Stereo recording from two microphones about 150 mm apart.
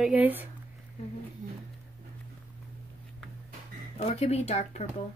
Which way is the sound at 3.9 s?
45° left (ahead or behind).